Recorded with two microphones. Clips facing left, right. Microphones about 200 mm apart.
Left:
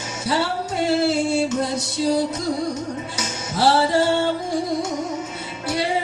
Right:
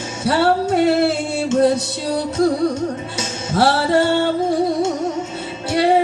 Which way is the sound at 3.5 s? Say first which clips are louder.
Right 2 dB; 60° right (ahead or behind).